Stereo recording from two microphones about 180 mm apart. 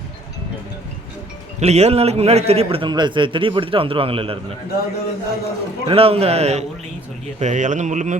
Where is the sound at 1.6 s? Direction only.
35° right (ahead or behind).